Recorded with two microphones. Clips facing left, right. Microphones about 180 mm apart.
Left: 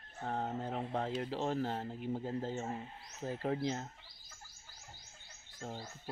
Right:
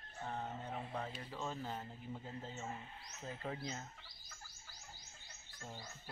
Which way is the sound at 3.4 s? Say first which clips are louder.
Left 9 dB; 60° left (ahead or behind).